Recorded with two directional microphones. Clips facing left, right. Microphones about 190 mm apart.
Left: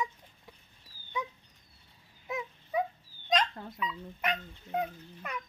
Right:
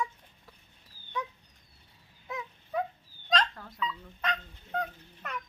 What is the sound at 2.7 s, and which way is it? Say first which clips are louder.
Dog: left 1 dB; 10° left (ahead or behind).